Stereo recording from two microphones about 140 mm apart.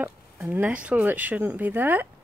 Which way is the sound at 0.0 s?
10° right (ahead or behind).